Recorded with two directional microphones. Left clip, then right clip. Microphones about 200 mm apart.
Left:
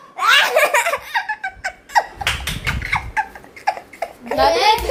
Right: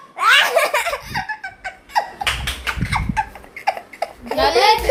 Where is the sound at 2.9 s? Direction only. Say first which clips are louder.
Left 1 dB; 10° right (ahead or behind).